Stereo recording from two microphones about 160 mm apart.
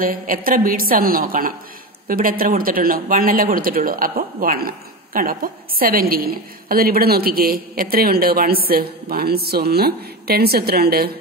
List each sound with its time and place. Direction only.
0.0 s a woman's voice: 60° right (ahead or behind)